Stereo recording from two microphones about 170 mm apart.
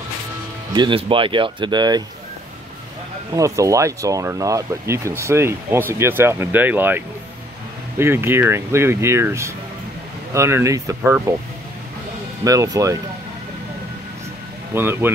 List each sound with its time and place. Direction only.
0.7 s speech: 30° right (ahead or behind)
3.3 s speech: 20° right (ahead or behind)
8.0 s speech: 15° right (ahead or behind)
12.4 s speech: 20° right (ahead or behind)
14.7 s speech: 15° right (ahead or behind)